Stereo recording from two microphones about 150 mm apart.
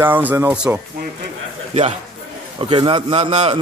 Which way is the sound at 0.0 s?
10° right (ahead or behind).